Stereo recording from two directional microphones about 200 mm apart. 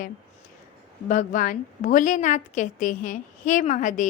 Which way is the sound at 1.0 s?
40° left (ahead or behind).